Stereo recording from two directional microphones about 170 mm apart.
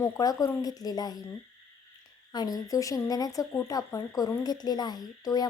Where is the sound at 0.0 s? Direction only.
20° left (ahead or behind).